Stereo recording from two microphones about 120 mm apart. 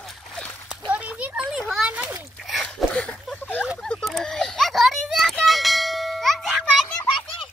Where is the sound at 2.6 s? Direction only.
10° left (ahead or behind).